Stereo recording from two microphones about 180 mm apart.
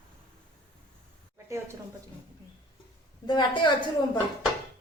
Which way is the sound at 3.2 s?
25° left (ahead or behind).